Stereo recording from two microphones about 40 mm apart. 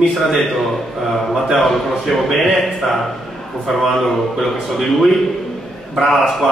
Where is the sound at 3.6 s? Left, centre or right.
Centre.